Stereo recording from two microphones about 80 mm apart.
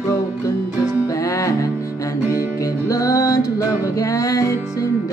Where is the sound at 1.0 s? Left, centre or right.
Left.